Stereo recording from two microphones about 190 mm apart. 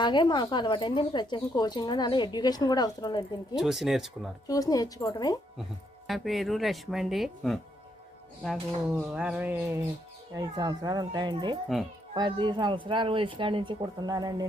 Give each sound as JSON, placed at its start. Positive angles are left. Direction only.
{"t": 0.0, "sound": "speech", "side_deg": 25}
{"t": 3.5, "sound": "speech", "side_deg": 0}
{"t": 4.4, "sound": "speech", "side_deg": 20}
{"t": 6.1, "sound": "speech", "side_deg": 0}
{"t": 9.0, "sound": "a sound", "side_deg": -5}
{"t": 10.3, "sound": "speech", "side_deg": -20}